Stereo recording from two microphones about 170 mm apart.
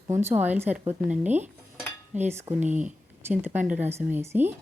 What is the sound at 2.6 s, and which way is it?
Speech, 45° right (ahead or behind).